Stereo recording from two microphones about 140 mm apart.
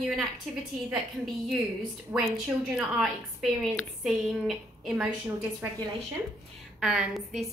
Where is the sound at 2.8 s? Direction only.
5° right (ahead or behind).